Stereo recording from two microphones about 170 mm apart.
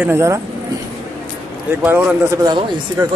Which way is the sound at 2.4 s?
25° right (ahead or behind).